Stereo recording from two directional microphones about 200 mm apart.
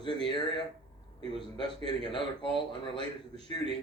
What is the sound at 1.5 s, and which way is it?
A man's voice, 25° left (ahead or behind).